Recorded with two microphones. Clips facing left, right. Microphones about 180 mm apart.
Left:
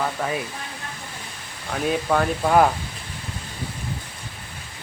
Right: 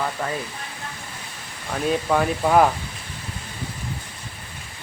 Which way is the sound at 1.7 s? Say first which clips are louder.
Even; centre (ahead or behind).